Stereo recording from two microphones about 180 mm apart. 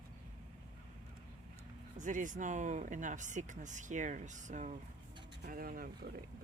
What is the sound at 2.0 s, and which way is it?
Speech, 45° right (ahead or behind).